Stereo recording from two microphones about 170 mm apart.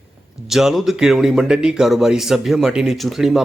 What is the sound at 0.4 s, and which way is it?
Speech, centre (ahead or behind).